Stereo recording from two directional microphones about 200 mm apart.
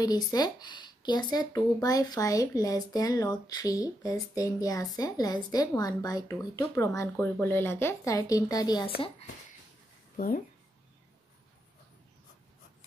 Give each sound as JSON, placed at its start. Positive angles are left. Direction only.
{"t": 0.0, "sound": "speech", "side_deg": 20}
{"t": 10.1, "sound": "speech", "side_deg": 45}